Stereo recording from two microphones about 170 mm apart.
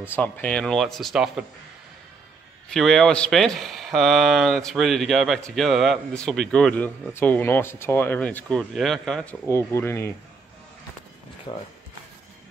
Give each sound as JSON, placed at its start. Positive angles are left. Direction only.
{"t": 0.1, "sound": "speech", "side_deg": 10}
{"t": 2.7, "sound": "speech", "side_deg": 5}
{"t": 11.5, "sound": "speech", "side_deg": 30}